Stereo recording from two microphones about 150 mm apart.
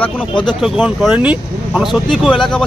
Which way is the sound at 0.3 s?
30° left (ahead or behind).